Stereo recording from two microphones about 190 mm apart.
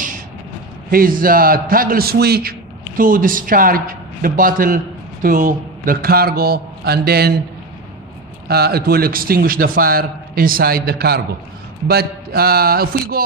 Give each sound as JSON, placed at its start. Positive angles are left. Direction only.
{"t": 0.8, "sound": "a man's voice", "side_deg": -50}
{"t": 8.5, "sound": "a man's voice", "side_deg": -55}